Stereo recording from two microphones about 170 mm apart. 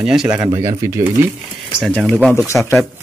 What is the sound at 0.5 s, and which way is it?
Speech, 20° right (ahead or behind).